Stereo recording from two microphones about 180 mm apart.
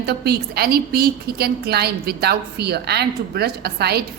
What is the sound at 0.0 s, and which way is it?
A woman's voice, 60° right (ahead or behind).